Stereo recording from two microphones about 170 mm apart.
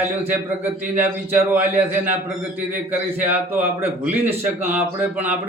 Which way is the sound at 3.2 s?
10° right (ahead or behind).